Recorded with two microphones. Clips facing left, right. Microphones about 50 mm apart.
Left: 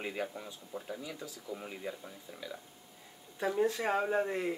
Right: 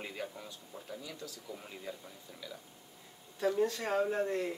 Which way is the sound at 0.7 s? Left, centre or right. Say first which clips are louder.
Left 4 dB; centre.